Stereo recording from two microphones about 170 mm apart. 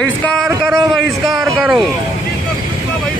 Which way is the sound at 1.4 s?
10° right (ahead or behind).